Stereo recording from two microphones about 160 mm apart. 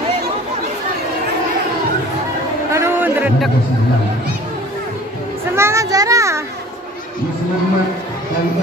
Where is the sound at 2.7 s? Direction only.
15° right (ahead or behind).